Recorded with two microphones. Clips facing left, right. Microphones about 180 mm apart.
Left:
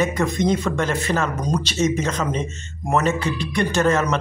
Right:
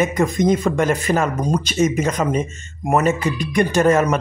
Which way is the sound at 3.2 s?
50° right (ahead or behind).